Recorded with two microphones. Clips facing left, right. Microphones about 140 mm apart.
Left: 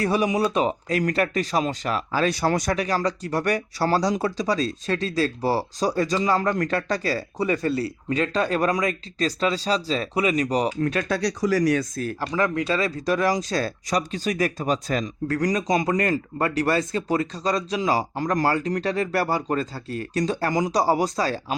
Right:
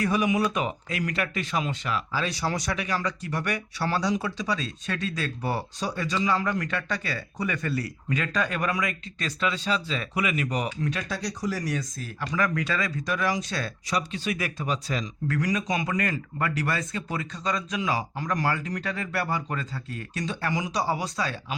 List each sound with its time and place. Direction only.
0.0 s speech: 35° left (ahead or behind)
10.8 s speech: 55° left (ahead or behind)
11.2 s speech: 90° left; by 12.1 s 65° left (ahead or behind)
12.2 s speech: 25° left (ahead or behind)